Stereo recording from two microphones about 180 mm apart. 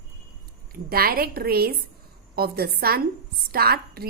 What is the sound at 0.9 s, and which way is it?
A woman's voice, 55° right (ahead or behind).